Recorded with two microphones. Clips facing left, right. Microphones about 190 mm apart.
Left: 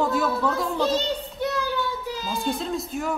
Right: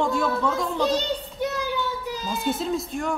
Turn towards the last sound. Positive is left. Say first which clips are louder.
# right 1 dB
turn(degrees=0)  # may be behind; listen again after turning